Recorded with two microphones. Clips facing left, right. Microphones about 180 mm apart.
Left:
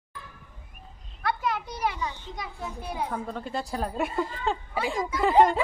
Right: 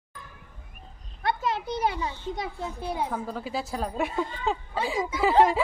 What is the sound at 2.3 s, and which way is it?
Speech, 30° right (ahead or behind).